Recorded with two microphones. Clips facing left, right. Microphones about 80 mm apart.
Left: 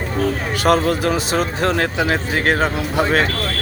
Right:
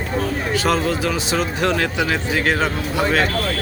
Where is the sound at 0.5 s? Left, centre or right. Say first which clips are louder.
Left 3 dB; left.